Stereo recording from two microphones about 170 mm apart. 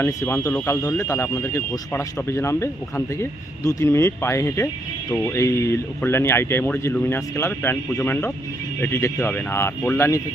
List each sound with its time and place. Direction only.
0.0 s speech: 15° left (ahead or behind)